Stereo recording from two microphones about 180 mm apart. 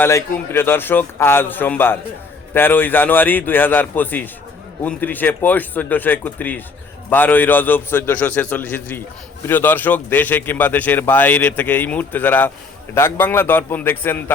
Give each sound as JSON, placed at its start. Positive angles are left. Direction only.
{"t": 0.0, "sound": "a man's voice", "side_deg": 15}